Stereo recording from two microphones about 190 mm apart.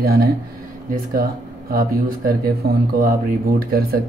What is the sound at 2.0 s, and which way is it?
Speech, 55° right (ahead or behind).